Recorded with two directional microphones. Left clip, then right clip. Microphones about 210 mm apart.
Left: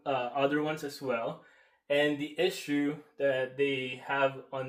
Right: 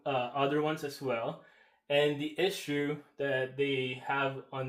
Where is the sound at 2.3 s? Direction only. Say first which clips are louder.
Left 1 dB; 20° right (ahead or behind).